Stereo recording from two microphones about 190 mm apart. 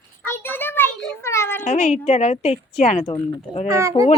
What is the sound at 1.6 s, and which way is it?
A woman's voice, 40° left (ahead or behind).